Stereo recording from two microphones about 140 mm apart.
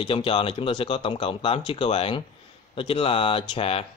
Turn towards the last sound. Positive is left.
turn(degrees=40)  # may be behind; listen again after turning